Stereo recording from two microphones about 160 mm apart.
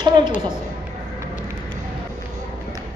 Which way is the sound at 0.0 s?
30° right (ahead or behind).